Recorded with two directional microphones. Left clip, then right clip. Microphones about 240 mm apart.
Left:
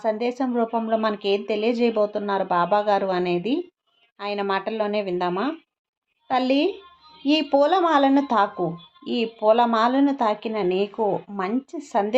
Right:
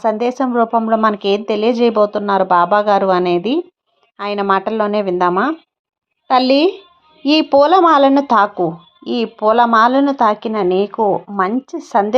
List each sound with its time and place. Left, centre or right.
0.0 s speech: right